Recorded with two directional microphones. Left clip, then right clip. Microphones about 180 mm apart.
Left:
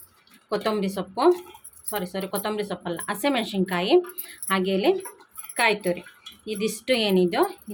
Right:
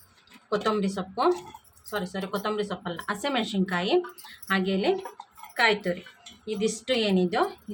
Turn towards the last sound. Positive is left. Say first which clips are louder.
# left 3 dB
turn(degrees=20)  # may be behind; listen again after turning